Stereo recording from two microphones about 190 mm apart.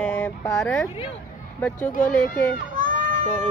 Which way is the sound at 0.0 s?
10° left (ahead or behind).